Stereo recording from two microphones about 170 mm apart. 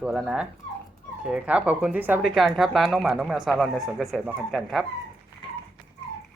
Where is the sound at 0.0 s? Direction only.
5° right (ahead or behind).